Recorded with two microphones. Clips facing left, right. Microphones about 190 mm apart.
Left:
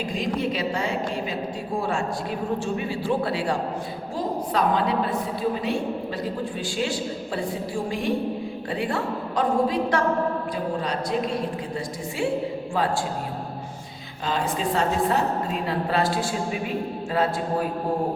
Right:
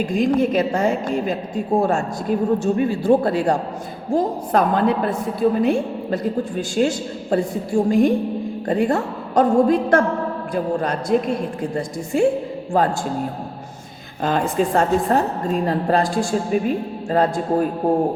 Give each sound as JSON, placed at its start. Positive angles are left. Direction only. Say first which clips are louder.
{"t": 0.0, "sound": "a woman's voice", "louder": "right 8 dB", "side_deg": -50}
{"t": 14.2, "sound": "a woman's voice", "louder": "right 7 dB", "side_deg": -50}